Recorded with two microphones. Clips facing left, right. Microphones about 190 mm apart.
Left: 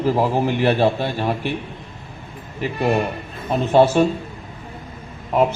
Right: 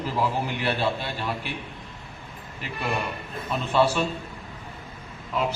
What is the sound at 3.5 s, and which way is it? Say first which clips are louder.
Speech: left 8 dB; 45° left (ahead or behind).